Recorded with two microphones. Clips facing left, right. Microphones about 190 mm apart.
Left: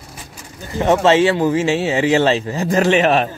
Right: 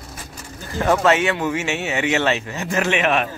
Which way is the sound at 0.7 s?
20° left (ahead or behind).